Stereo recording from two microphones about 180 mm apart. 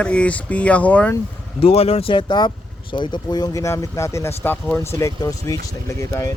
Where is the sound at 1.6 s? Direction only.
35° left (ahead or behind); by 6.3 s 15° left (ahead or behind).